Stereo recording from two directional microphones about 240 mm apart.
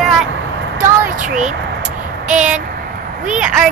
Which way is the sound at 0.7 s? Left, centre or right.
Right.